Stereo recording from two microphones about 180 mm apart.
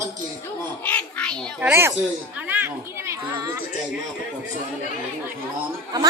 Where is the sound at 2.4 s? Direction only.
10° right (ahead or behind).